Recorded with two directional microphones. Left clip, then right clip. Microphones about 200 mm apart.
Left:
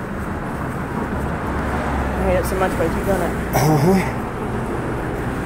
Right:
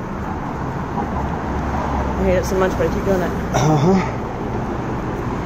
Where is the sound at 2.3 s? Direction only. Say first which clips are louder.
Right 2 dB; 55° right (ahead or behind).